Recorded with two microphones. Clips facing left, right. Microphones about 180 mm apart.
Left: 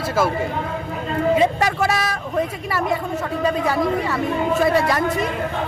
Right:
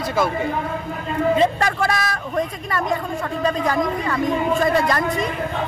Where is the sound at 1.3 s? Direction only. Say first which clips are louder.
Left 1 dB; 10° left (ahead or behind).